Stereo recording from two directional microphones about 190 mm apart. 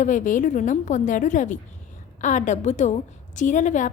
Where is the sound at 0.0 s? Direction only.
40° left (ahead or behind).